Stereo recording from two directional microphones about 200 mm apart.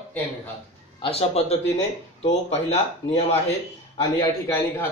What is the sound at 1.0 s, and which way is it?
Speech, 30° left (ahead or behind).